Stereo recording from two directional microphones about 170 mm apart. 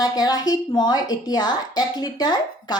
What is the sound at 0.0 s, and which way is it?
Speech, 25° left (ahead or behind).